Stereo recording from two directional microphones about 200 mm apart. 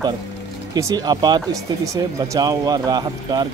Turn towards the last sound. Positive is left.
turn(degrees=-20)  # may be behind; listen again after turning